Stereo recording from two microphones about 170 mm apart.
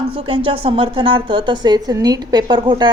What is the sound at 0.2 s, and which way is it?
A woman's voice, 30° right (ahead or behind).